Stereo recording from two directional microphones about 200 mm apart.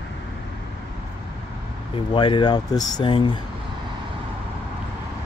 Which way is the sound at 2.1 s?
25° left (ahead or behind).